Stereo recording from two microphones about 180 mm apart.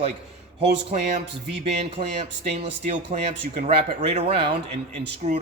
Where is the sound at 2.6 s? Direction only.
35° right (ahead or behind).